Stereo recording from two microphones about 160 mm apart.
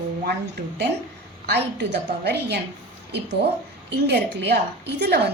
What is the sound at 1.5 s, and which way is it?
A woman's voice, 90° right.